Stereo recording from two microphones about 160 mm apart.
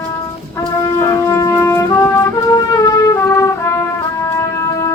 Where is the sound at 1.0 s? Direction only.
20° left (ahead or behind).